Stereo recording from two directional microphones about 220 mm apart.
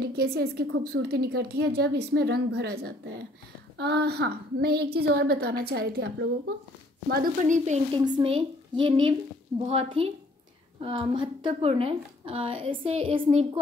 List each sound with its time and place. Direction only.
0.0 s a woman's voice: 45° right (ahead or behind); by 13.5 s 25° right (ahead or behind)